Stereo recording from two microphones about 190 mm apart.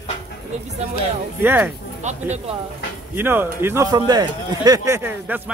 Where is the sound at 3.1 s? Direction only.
10° right (ahead or behind).